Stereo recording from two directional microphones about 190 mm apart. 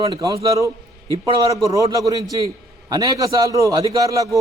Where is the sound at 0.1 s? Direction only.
20° right (ahead or behind).